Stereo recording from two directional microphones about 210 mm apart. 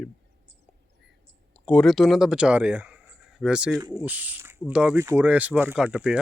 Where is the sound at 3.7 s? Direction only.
20° right (ahead or behind).